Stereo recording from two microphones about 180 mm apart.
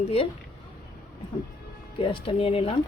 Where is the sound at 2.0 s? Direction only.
30° left (ahead or behind).